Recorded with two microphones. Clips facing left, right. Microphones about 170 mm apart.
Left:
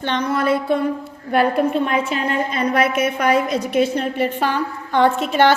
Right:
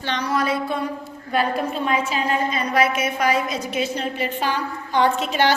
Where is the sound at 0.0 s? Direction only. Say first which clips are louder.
Left 3 dB; 50° left (ahead or behind).